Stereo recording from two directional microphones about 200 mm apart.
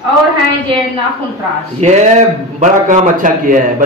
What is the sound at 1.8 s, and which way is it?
A man's voice, 35° right (ahead or behind).